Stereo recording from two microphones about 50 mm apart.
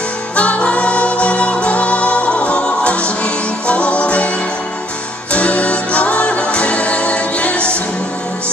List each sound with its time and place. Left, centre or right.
0.4 s music: left
5.3 s music: left